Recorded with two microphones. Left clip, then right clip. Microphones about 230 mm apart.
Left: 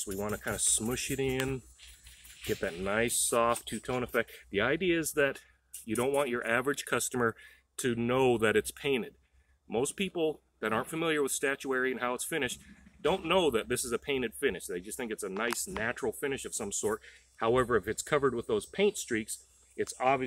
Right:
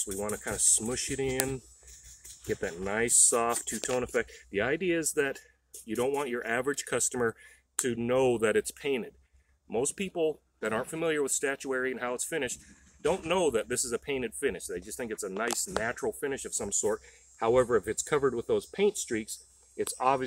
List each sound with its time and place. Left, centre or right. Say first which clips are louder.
0.0 s speech: right 1 dB; centre